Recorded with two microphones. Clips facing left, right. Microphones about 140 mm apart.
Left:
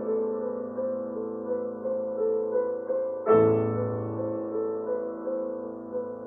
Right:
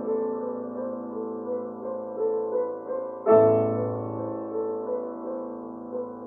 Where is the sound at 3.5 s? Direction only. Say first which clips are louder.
Right 2 dB; 25° right (ahead or behind).